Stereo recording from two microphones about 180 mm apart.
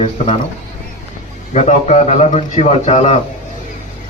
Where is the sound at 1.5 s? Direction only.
40° left (ahead or behind).